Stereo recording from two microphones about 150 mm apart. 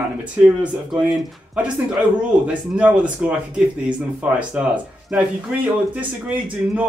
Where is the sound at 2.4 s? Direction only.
10° right (ahead or behind).